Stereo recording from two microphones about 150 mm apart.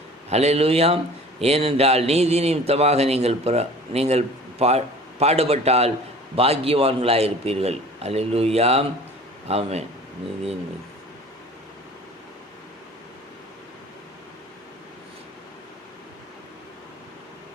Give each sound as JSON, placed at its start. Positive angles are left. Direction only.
{"t": 0.3, "sound": "a man's voice", "side_deg": -45}